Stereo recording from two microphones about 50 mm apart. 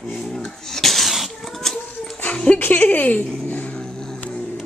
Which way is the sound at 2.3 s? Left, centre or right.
Left.